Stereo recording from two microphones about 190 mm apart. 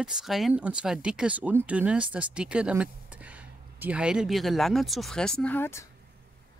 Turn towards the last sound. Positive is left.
turn(degrees=10)  # may be behind; listen again after turning